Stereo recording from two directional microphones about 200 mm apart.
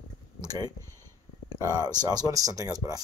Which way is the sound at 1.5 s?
20° right (ahead or behind).